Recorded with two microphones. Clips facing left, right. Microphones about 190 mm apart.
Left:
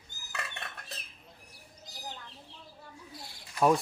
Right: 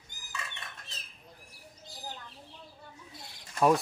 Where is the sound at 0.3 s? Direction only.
60° left (ahead or behind).